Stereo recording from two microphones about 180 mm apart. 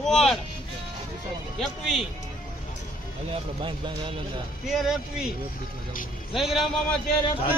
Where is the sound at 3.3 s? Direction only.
25° right (ahead or behind).